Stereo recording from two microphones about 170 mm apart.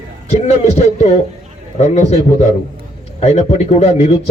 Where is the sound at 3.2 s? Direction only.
40° left (ahead or behind).